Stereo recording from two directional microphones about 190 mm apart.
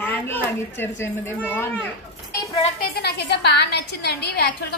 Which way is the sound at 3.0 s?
60° left (ahead or behind).